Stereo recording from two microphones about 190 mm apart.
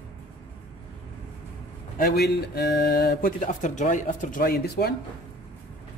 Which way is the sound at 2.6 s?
60° left (ahead or behind).